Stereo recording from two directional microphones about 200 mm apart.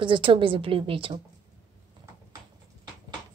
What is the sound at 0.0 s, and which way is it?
A woman's voice, 25° right (ahead or behind).